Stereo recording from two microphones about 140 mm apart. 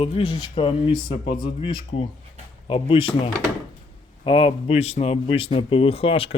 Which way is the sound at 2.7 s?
40° left (ahead or behind).